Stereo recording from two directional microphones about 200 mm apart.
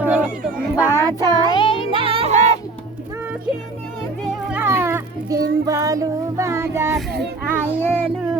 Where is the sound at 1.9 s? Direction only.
25° right (ahead or behind).